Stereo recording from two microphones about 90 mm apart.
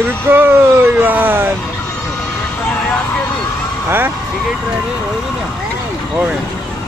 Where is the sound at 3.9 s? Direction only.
25° right (ahead or behind).